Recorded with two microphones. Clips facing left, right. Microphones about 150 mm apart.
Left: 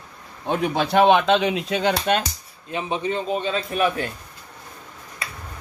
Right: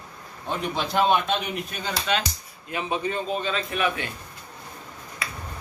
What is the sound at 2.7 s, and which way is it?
A man's voice, 20° left (ahead or behind).